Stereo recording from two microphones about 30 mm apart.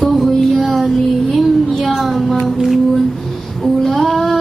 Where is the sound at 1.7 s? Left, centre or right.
Centre.